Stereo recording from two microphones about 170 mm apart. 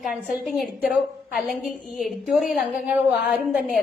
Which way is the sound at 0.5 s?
Centre (ahead or behind).